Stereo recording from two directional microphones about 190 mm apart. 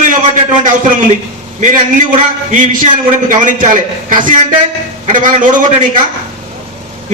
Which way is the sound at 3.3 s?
45° right (ahead or behind).